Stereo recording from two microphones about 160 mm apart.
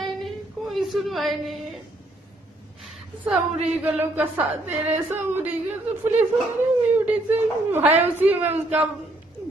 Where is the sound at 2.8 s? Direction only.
5° right (ahead or behind).